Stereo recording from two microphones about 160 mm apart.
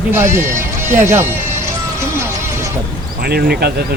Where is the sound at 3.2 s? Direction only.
75° right (ahead or behind).